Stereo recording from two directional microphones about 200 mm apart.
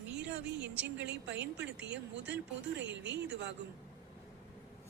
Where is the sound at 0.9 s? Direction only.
60° right (ahead or behind).